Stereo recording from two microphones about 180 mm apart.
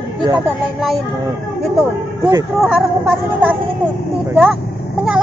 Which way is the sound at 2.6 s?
Centre (ahead or behind).